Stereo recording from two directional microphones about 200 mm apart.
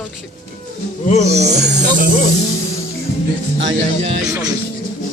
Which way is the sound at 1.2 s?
35° right (ahead or behind).